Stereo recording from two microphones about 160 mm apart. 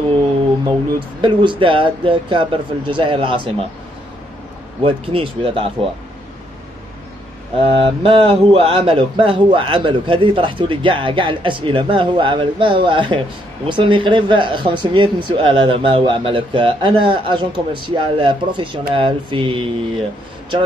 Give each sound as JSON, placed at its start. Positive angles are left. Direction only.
{"t": 0.7, "sound": "speech", "side_deg": -30}
{"t": 4.8, "sound": "speech", "side_deg": -35}
{"t": 7.6, "sound": "speech", "side_deg": -35}